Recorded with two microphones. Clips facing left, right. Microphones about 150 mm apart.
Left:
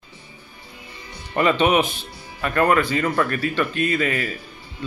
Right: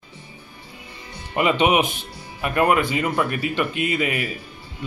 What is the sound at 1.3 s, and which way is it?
Speech, 10° right (ahead or behind).